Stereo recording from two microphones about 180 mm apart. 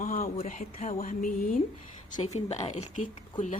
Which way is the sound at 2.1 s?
35° left (ahead or behind).